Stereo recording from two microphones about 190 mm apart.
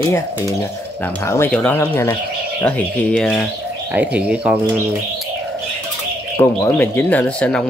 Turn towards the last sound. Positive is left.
turn(degrees=5)  # may be behind; listen again after turning